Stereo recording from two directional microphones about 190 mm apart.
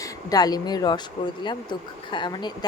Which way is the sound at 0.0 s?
20° left (ahead or behind).